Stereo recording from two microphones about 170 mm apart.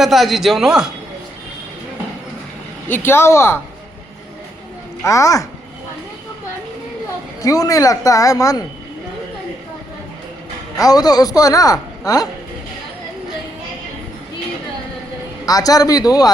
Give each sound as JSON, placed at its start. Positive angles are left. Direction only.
{"t": 0.0, "sound": "speech", "side_deg": 0}
{"t": 2.9, "sound": "speech", "side_deg": 15}
{"t": 5.0, "sound": "a man's voice", "side_deg": 20}
{"t": 7.4, "sound": "a man's voice", "side_deg": 20}
{"t": 10.8, "sound": "a man's voice", "side_deg": 20}
{"t": 15.4, "sound": "a man's voice", "side_deg": 20}